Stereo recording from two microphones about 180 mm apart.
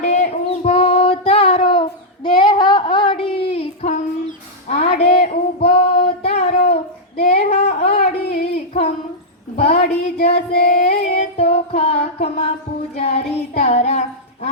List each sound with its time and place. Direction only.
0.0 s child singing: 40° left (ahead or behind)
2.2 s female singing: 25° left (ahead or behind)
4.7 s music: 40° left (ahead or behind)
5.5 s child singing: 30° left (ahead or behind)
7.8 s a sound: 35° left (ahead or behind)
10.7 s female singing: 40° left (ahead or behind)
11.7 s a sound: 35° left (ahead or behind)
13.0 s child singing: 35° left (ahead or behind)